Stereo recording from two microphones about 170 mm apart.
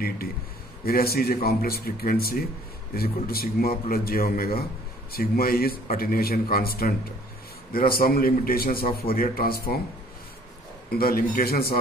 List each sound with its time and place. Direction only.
0.8 s a man's voice: 65° left (ahead or behind)
11.0 s a man's voice: 60° left (ahead or behind)